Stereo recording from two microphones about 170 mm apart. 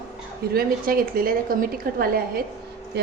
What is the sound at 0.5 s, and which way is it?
A woman's voice, 60° right (ahead or behind).